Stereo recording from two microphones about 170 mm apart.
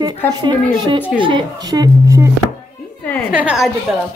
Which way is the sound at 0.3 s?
25° right (ahead or behind).